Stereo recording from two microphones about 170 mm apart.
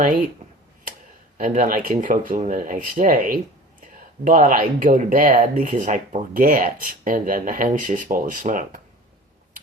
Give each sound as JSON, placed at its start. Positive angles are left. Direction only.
{"t": 1.4, "sound": "speech", "side_deg": -55}